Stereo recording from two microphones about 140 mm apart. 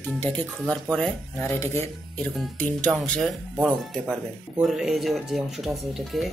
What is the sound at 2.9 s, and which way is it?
Speech, centre (ahead or behind).